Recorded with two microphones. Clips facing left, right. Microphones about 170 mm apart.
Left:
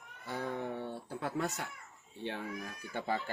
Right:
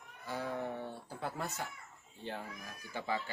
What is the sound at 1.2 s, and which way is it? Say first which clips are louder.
Speech: left 3 dB; 70° left (ahead or behind).